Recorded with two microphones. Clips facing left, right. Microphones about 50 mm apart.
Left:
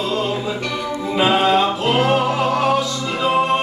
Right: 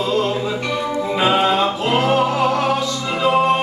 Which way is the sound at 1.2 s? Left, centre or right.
Centre.